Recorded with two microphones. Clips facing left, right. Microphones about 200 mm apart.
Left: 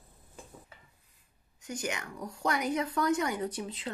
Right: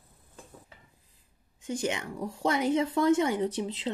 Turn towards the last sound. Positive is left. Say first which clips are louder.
# right 5 dB
turn(degrees=-25)  # may be behind; listen again after turning